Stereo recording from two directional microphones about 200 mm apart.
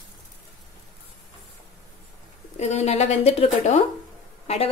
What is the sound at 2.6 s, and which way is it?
A woman's voice, 35° left (ahead or behind).